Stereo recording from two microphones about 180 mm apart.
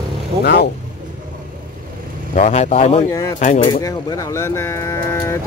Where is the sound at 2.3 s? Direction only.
40° left (ahead or behind).